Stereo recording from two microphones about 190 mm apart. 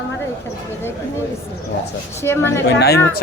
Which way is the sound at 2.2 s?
10° left (ahead or behind).